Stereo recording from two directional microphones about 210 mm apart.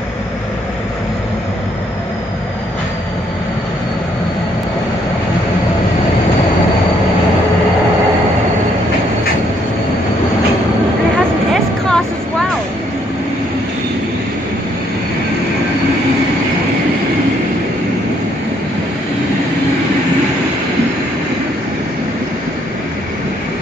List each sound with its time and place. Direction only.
11.5 s vehicle: 5° left (ahead or behind)